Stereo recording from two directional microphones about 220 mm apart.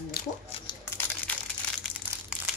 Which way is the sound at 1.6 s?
5° left (ahead or behind).